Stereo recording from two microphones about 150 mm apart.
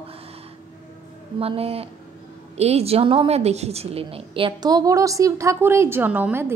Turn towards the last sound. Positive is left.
turn(degrees=-15)  # may be behind; listen again after turning